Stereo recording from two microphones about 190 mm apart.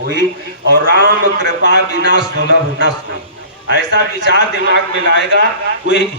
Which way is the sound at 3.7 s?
60° right (ahead or behind).